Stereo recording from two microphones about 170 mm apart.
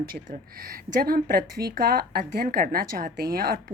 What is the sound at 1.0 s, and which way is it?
Speech, 60° right (ahead or behind).